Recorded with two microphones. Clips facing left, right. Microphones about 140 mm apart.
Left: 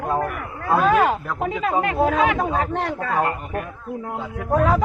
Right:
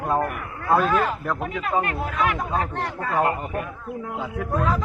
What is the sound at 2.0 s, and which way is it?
Speech, 90° left.